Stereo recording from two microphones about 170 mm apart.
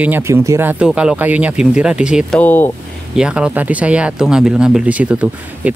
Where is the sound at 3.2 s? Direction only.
5° right (ahead or behind).